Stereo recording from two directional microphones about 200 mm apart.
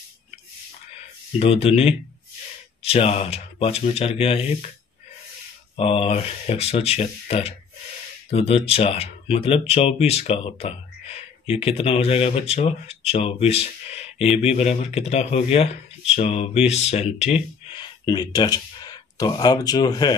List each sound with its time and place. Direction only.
1.4 s speech: 30° left (ahead or behind)
5.8 s speech: 30° left (ahead or behind)
17.8 s speech: 20° left (ahead or behind)